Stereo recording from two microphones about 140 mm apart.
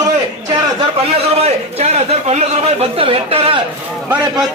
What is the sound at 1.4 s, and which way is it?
A man's voice, 50° right (ahead or behind).